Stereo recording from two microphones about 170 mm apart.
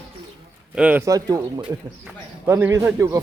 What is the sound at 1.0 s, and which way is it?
A man's voice, 20° right (ahead or behind).